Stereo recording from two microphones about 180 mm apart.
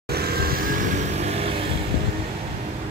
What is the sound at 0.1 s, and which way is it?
Vehicle, 60° right (ahead or behind).